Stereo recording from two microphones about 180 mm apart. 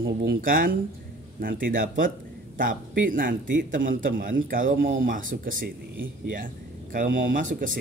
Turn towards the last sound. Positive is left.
turn(degrees=-50)  # may be behind; listen again after turning